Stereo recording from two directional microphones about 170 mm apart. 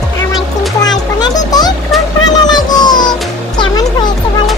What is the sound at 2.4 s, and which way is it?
Music, 25° left (ahead or behind).